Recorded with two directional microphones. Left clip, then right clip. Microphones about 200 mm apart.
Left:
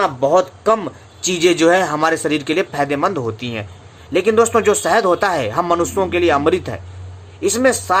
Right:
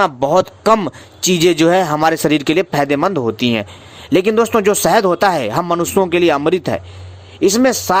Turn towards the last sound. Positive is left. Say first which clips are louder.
# right 1 dB
turn(degrees=-45)  # may be behind; listen again after turning